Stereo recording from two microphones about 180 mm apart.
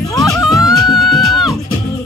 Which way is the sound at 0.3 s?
Centre (ahead or behind).